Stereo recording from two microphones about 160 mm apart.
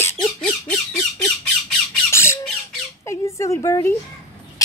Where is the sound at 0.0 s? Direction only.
15° left (ahead or behind).